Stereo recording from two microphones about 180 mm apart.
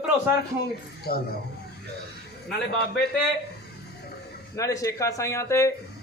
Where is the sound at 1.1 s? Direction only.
60° left (ahead or behind).